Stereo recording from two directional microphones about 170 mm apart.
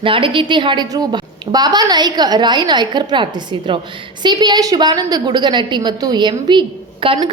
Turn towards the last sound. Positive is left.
turn(degrees=-30)  # may be behind; listen again after turning